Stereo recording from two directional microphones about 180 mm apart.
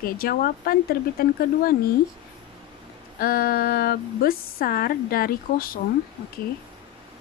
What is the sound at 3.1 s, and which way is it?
A woman's voice, 55° left (ahead or behind).